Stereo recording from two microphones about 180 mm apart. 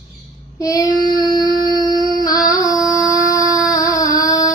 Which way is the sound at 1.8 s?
20° right (ahead or behind).